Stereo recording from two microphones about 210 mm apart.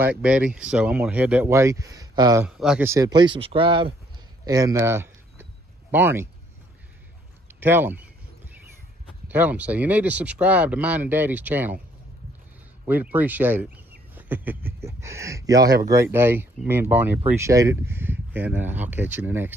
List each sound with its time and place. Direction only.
0.0 s speech: 5° right (ahead or behind)
2.4 s speech: 5° right (ahead or behind); by 3.9 s 25° right (ahead or behind)
4.5 s a sound: 15° right (ahead or behind)
7.6 s speech: 10° right (ahead or behind)
9.3 s speech: 10° right (ahead or behind)
12.8 s speech: 10° right (ahead or behind)